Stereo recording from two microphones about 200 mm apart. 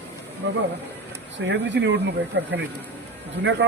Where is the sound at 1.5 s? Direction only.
60° right (ahead or behind).